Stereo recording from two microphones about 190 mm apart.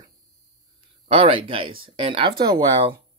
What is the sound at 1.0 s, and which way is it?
Speech, 30° right (ahead or behind).